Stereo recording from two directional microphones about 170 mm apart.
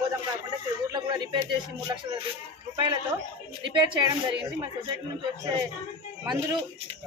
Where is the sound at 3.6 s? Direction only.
30° right (ahead or behind).